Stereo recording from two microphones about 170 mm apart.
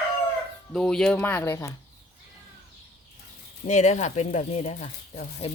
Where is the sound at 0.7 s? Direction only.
5° left (ahead or behind).